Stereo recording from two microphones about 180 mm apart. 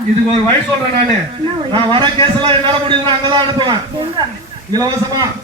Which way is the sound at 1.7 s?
30° right (ahead or behind).